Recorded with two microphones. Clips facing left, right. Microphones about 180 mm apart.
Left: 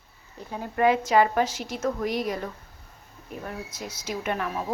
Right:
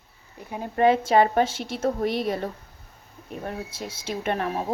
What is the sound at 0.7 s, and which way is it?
Speech, 30° right (ahead or behind).